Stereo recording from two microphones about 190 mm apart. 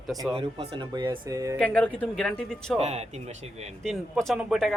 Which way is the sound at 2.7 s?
35° right (ahead or behind).